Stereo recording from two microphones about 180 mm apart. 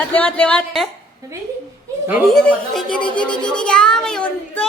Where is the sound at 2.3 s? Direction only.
5° left (ahead or behind).